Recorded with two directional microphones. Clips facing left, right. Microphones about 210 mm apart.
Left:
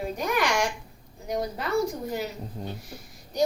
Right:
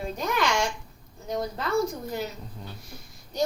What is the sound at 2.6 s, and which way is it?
Speech, 40° left (ahead or behind).